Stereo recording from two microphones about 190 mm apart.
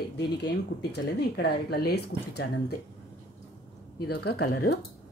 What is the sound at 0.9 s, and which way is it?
Speech, 60° left (ahead or behind).